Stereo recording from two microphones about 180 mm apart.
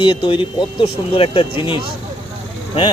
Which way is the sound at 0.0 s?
30° left (ahead or behind).